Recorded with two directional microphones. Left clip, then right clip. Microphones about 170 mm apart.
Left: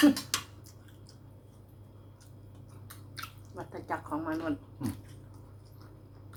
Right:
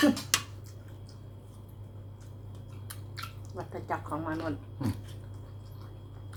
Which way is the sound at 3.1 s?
15° left (ahead or behind).